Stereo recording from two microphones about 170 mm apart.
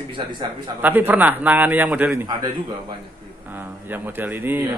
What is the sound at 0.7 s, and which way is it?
A man's voice, 10° right (ahead or behind).